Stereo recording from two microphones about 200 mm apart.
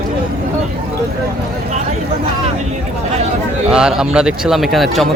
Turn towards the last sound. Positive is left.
turn(degrees=0)  # may be behind; listen again after turning